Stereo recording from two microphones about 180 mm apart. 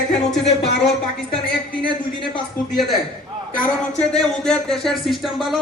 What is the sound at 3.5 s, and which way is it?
Speech, 5° left (ahead or behind).